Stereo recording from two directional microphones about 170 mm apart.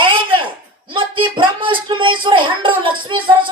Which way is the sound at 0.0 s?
30° right (ahead or behind).